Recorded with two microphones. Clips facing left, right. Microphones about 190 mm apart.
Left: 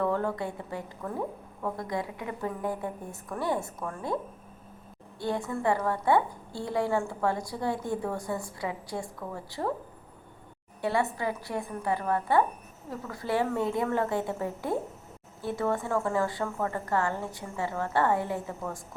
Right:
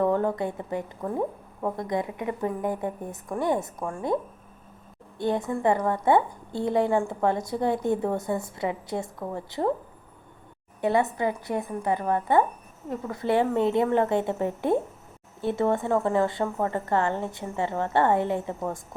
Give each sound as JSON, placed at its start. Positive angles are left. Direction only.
{"t": 0.0, "sound": "a woman's voice", "side_deg": -20}
{"t": 10.8, "sound": "a woman's voice", "side_deg": -20}